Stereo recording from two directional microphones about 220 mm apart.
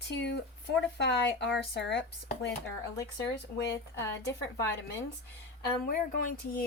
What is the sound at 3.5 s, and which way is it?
Speech, 50° left (ahead or behind).